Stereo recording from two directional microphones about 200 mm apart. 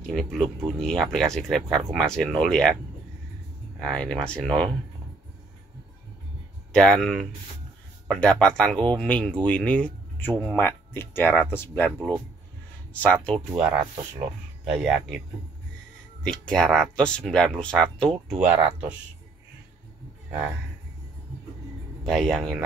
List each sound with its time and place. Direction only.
0.1 s speech: centre (ahead or behind)
3.8 s speech: 5° left (ahead or behind)
6.7 s speech: 5° left (ahead or behind)
12.9 s speech: 5° left (ahead or behind)
13.5 s speech: 5° right (ahead or behind)
16.3 s speech: 5° left (ahead or behind)
22.0 s speech: centre (ahead or behind)